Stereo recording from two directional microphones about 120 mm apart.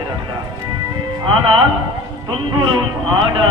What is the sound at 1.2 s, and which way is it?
Speech, 45° right (ahead or behind).